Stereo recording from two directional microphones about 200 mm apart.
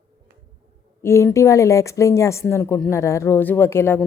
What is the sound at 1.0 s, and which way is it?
Speech, 15° left (ahead or behind).